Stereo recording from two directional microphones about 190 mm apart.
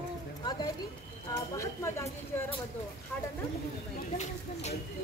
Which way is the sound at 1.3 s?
15° left (ahead or behind).